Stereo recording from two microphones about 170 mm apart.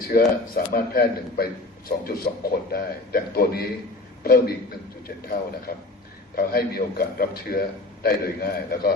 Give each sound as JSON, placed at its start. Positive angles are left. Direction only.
{"t": 0.1, "sound": "a man's voice", "side_deg": 60}